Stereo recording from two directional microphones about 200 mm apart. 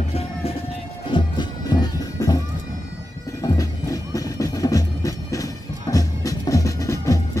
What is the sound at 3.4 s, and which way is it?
Music, 15° left (ahead or behind).